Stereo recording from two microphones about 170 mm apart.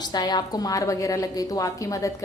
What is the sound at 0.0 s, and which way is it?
A woman's voice, 25° left (ahead or behind).